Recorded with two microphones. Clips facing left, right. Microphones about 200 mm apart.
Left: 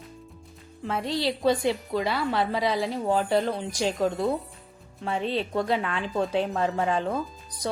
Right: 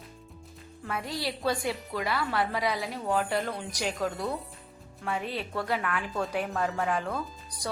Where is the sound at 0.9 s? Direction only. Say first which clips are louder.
Left 6 dB; 25° left (ahead or behind).